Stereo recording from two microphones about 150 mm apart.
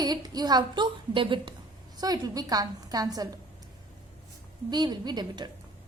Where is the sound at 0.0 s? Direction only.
25° right (ahead or behind).